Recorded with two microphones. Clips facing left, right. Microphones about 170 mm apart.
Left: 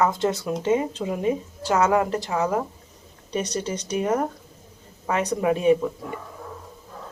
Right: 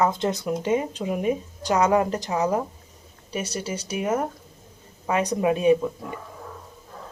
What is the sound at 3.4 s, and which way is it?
Speech, 10° right (ahead or behind).